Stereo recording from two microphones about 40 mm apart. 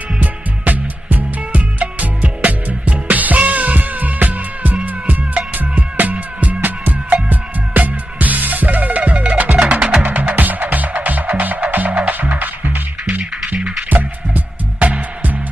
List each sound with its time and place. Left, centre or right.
0.2 s music: right
10.0 s music: right
13.6 s music: centre
13.8 s music: right